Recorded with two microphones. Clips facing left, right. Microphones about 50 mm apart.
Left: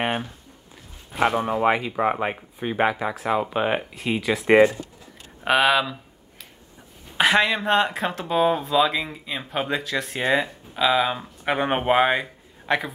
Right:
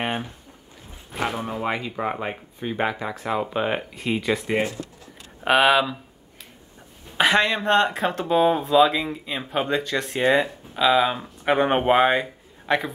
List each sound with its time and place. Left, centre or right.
1.2 s speech: centre
7.2 s speech: centre